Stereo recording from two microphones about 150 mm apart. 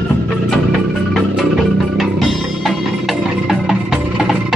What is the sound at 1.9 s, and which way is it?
Music, centre (ahead or behind).